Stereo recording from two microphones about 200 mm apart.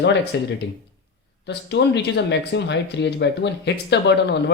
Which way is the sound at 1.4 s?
60° left (ahead or behind).